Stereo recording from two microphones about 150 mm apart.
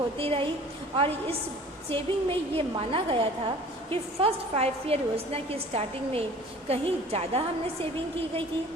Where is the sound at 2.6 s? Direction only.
35° right (ahead or behind).